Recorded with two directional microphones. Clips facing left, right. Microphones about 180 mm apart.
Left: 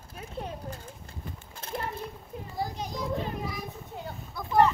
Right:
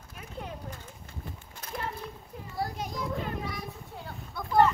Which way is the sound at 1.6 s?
30° left (ahead or behind).